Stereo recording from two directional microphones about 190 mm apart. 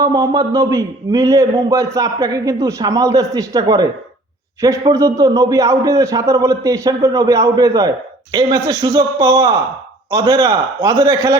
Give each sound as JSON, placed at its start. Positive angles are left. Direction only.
{"t": 0.0, "sound": "a man's voice", "side_deg": -20}
{"t": 4.9, "sound": "a man's voice", "side_deg": -15}